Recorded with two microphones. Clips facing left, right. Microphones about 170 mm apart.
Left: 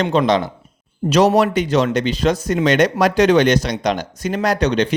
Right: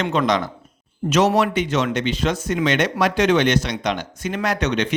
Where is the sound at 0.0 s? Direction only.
30° left (ahead or behind).